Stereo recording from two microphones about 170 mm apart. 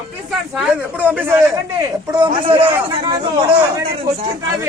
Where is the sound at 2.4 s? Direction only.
30° right (ahead or behind).